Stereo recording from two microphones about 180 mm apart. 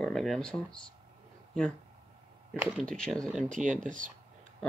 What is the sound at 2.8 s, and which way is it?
Speech, 5° left (ahead or behind).